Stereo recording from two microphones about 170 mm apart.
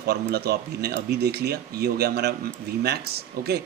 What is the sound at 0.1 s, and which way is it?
Speech, 70° right (ahead or behind).